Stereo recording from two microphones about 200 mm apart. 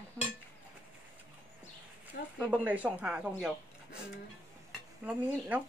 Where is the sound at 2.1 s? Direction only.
50° left (ahead or behind).